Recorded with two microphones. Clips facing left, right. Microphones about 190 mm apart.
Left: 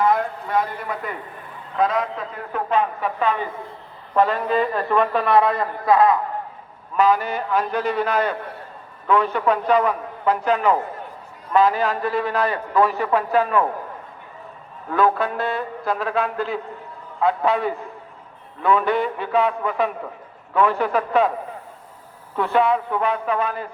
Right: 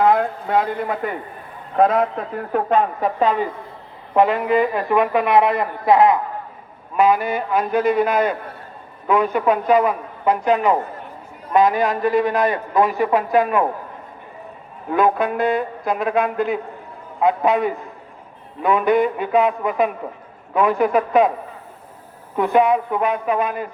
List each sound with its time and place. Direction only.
0.0 s a woman's voice: 60° right (ahead or behind); by 3.3 s 35° right (ahead or behind)
4.1 s a man's voice: 15° right (ahead or behind)
14.8 s a man's voice: 15° right (ahead or behind)
22.4 s a man's voice: 15° right (ahead or behind)